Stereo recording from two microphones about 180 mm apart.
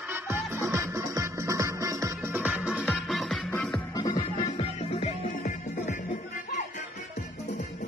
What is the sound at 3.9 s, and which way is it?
Music, 20° left (ahead or behind).